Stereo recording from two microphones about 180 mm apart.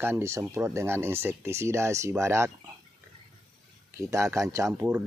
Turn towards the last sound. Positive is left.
turn(degrees=-15)  # may be behind; listen again after turning